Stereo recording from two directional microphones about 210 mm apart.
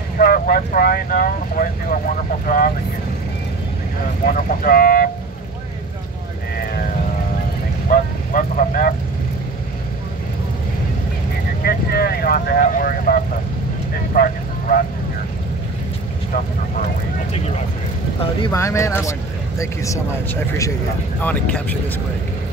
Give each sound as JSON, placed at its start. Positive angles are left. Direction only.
{"t": 0.2, "sound": "speech", "side_deg": 45}
{"t": 4.3, "sound": "speech", "side_deg": 45}
{"t": 7.9, "sound": "a sound", "side_deg": 40}
{"t": 11.6, "sound": "speech", "side_deg": 45}
{"t": 14.1, "sound": "vehicle", "side_deg": 45}
{"t": 18.4, "sound": "speech", "side_deg": 15}
{"t": 21.2, "sound": "speech", "side_deg": 10}